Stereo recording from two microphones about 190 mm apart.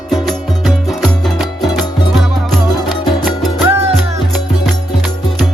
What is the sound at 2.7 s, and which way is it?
Music, 20° left (ahead or behind).